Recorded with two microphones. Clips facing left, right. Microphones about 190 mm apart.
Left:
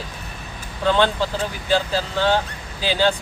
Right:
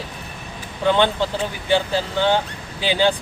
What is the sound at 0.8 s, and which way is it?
Speech, 15° right (ahead or behind).